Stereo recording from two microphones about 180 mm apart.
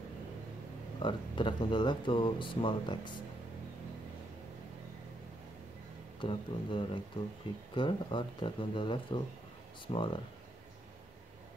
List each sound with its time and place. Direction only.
1.0 s speech: 25° left (ahead or behind)
6.2 s speech: 30° left (ahead or behind)